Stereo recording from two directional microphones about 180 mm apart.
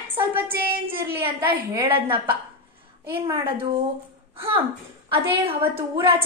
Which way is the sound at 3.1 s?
15° right (ahead or behind).